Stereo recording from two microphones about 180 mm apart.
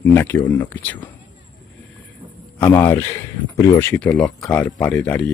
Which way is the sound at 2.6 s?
15° left (ahead or behind).